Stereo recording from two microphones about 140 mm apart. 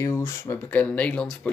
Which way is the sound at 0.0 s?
20° left (ahead or behind).